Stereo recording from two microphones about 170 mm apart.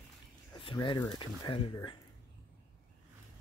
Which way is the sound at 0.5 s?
30° left (ahead or behind).